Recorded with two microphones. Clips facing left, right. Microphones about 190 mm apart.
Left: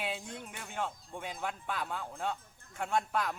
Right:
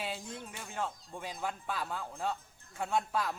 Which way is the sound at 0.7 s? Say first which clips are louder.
Even; centre (ahead or behind).